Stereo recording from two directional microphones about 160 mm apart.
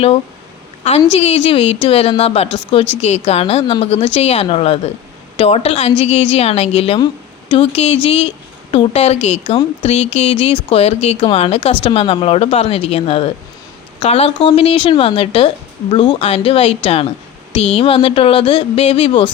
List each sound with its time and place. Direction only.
1.1 s a woman's voice: 35° left (ahead or behind)